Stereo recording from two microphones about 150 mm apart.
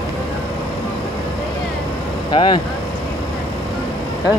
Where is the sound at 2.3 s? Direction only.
30° left (ahead or behind).